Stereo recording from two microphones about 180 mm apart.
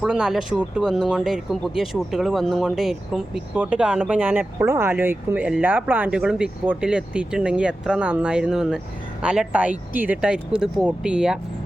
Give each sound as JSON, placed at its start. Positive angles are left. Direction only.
{"t": 0.0, "sound": "speech", "side_deg": -5}